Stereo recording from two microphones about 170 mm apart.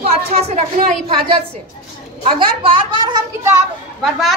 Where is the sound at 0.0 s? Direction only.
40° right (ahead or behind).